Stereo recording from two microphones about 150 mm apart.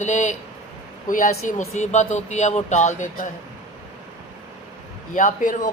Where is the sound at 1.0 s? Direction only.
65° left (ahead or behind).